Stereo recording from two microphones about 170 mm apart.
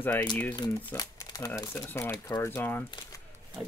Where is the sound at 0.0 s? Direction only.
10° left (ahead or behind).